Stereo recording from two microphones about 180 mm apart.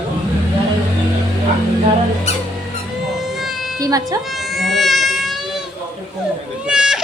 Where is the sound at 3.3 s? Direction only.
Centre (ahead or behind).